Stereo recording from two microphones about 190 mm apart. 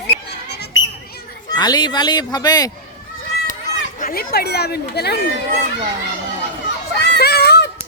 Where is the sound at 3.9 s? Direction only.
50° left (ahead or behind).